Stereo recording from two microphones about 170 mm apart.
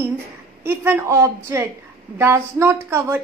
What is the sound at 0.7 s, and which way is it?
A woman's voice, 15° right (ahead or behind).